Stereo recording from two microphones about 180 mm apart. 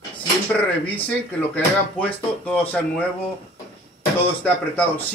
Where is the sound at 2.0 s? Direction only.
10° left (ahead or behind).